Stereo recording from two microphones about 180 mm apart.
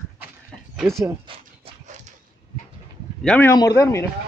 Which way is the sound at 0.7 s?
Centre (ahead or behind).